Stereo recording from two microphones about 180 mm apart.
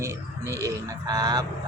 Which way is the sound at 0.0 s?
15° right (ahead or behind).